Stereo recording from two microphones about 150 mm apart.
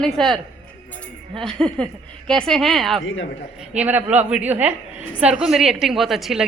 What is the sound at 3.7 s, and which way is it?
Speech, 10° right (ahead or behind).